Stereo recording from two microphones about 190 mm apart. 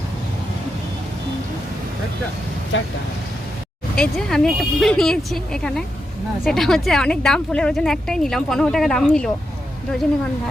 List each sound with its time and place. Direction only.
2.7 s speech: 85° left
3.9 s speech: 5° left (ahead or behind)